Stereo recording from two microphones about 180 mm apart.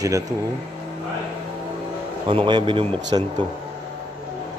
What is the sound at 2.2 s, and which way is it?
A man's voice, 25° right (ahead or behind).